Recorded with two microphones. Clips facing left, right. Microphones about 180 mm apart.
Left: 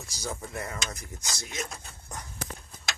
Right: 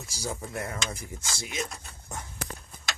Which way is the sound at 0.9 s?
25° right (ahead or behind).